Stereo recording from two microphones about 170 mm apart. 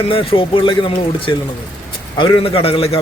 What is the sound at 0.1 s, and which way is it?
A man's voice, 30° left (ahead or behind).